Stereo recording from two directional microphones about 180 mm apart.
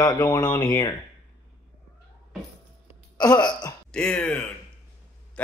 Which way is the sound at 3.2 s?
25° left (ahead or behind).